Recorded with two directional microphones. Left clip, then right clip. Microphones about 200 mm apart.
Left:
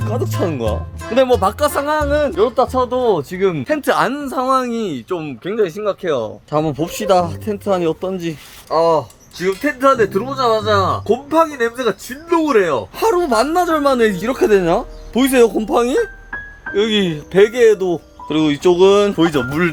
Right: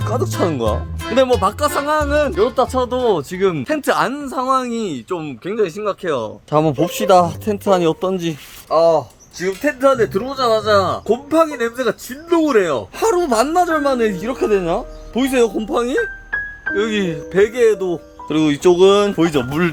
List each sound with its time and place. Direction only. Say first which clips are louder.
0.0 s speech: right 1 dB; 15° right (ahead or behind)
1.1 s speech: left 1 dB; 5° right (ahead or behind)
6.5 s speech: right 4 dB; 25° right (ahead or behind)
8.7 s speech: right 1 dB; centre (ahead or behind)
18.3 s speech: even; 15° right (ahead or behind)